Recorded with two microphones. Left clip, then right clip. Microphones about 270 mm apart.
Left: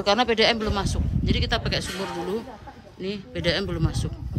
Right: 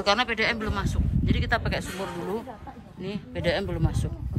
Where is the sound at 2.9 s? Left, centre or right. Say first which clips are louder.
Left 3 dB; centre.